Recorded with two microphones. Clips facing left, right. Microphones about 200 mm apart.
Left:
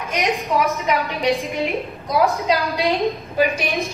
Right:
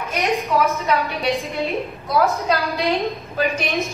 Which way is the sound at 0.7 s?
15° left (ahead or behind).